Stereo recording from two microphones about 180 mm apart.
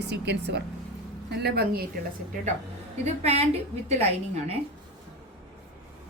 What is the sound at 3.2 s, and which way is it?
A woman's voice, 35° right (ahead or behind).